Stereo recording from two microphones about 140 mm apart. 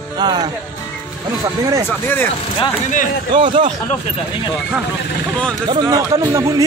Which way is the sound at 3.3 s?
35° right (ahead or behind).